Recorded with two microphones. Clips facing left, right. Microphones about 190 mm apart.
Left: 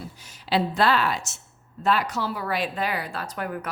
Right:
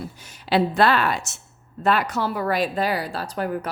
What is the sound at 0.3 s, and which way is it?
A woman's voice, 55° right (ahead or behind).